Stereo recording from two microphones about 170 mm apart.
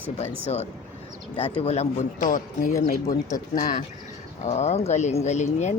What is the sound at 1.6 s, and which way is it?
A man's voice, 40° left (ahead or behind).